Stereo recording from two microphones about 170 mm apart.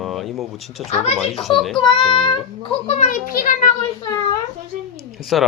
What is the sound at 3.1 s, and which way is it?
Speech, 55° left (ahead or behind).